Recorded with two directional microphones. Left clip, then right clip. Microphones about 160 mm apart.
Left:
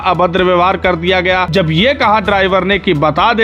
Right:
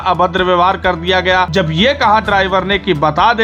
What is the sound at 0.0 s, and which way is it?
Speech, 30° left (ahead or behind).